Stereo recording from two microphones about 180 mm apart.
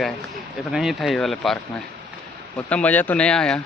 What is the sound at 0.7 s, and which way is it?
Speech, centre (ahead or behind).